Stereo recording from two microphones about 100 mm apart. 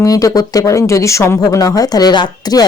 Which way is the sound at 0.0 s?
35° left (ahead or behind).